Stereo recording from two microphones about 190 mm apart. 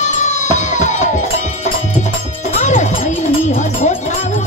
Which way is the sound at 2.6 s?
40° left (ahead or behind).